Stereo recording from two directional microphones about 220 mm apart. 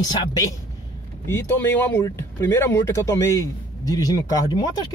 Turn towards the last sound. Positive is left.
turn(degrees=20)  # may be behind; listen again after turning